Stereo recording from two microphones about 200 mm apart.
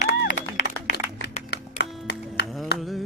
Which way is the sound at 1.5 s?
55° left (ahead or behind).